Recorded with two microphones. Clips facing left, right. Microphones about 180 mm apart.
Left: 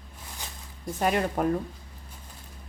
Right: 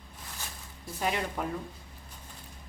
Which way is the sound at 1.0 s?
50° left (ahead or behind).